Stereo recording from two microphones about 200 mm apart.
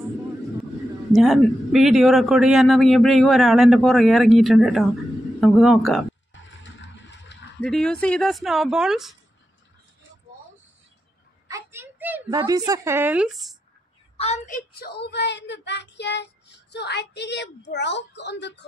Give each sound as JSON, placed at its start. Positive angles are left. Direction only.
{"t": 1.1, "sound": "speech", "side_deg": 0}
{"t": 6.6, "sound": "vehicle", "side_deg": 65}
{"t": 7.6, "sound": "speech", "side_deg": 5}
{"t": 11.4, "sound": "a woman's voice", "side_deg": -15}
{"t": 14.1, "sound": "a woman's voice", "side_deg": 35}